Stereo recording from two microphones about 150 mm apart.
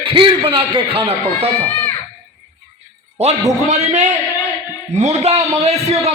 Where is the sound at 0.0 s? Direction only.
35° right (ahead or behind).